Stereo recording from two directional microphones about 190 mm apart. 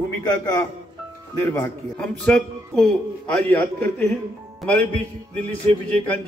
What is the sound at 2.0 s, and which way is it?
A man's voice, 5° left (ahead or behind).